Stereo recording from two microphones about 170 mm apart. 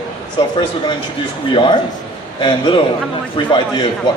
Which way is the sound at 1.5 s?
30° left (ahead or behind).